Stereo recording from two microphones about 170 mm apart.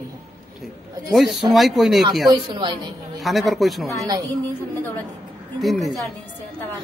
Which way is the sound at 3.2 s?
Centre (ahead or behind).